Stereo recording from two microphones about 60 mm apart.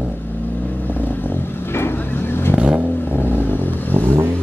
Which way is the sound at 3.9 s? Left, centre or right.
Right.